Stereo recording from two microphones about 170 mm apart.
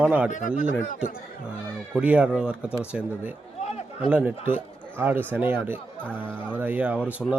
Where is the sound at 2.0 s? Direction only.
10° right (ahead or behind).